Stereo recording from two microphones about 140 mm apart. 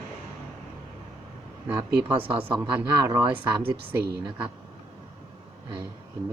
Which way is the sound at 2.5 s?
25° right (ahead or behind).